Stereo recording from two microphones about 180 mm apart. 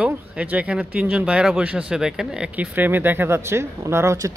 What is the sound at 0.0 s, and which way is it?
Speech, 10° right (ahead or behind).